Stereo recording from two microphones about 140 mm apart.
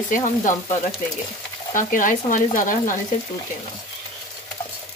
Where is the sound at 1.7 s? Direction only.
70° left (ahead or behind).